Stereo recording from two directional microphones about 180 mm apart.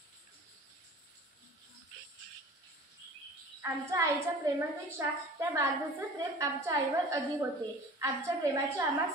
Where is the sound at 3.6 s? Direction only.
15° right (ahead or behind).